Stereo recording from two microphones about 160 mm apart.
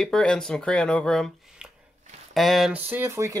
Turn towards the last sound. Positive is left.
turn(degrees=-15)  # may be behind; listen again after turning